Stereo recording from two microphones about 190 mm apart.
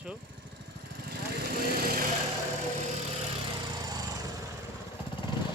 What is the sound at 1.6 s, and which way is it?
Lawn mower, 50° right (ahead or behind).